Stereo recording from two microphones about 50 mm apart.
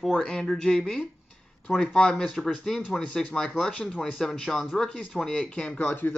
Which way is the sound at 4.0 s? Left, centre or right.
Centre.